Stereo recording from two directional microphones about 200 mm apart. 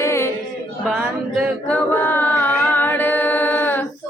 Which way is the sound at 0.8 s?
Centre (ahead or behind).